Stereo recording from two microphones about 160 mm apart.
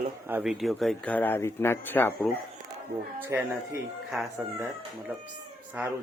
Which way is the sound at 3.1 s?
10° right (ahead or behind).